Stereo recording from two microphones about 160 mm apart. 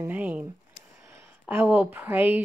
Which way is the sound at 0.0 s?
10° right (ahead or behind).